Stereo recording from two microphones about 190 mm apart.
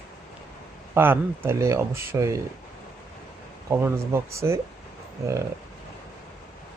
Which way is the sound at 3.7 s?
15° right (ahead or behind).